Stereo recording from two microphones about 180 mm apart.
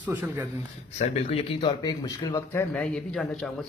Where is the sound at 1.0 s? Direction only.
35° left (ahead or behind).